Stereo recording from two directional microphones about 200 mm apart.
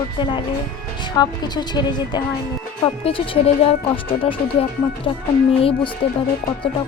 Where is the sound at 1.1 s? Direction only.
20° left (ahead or behind).